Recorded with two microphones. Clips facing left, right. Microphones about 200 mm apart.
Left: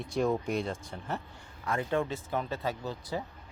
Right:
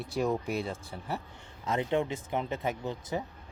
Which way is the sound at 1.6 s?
20° right (ahead or behind).